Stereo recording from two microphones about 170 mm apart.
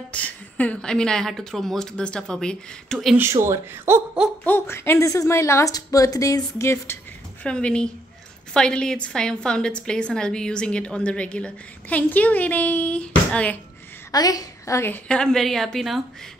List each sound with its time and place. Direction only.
0.1 s a woman's voice: 10° left (ahead or behind)
3.2 s speech: 15° right (ahead or behind)
4.5 s a woman's voice: 15° left (ahead or behind)
7.4 s a woman's voice: 5° left (ahead or behind)
14.1 s a woman's voice: 20° left (ahead or behind); by 16.0 s centre (ahead or behind)